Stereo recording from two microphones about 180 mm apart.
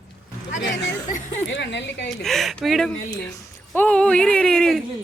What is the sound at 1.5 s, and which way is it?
Speech, 80° left.